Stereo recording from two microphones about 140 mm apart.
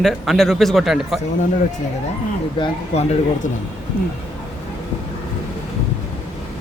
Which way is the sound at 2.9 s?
50° left (ahead or behind).